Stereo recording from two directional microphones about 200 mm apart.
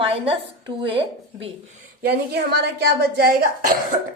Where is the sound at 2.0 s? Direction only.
55° right (ahead or behind).